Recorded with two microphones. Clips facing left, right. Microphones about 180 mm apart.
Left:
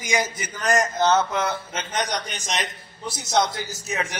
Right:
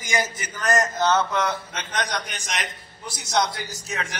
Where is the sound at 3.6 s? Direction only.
25° left (ahead or behind).